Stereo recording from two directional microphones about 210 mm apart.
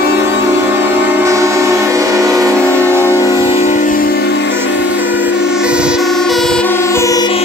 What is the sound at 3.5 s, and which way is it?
Music, 30° left (ahead or behind).